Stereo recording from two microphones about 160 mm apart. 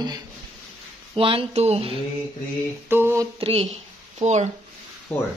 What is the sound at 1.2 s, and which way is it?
Speech, 35° right (ahead or behind).